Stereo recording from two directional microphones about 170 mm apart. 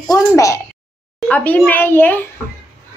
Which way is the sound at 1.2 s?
10° left (ahead or behind).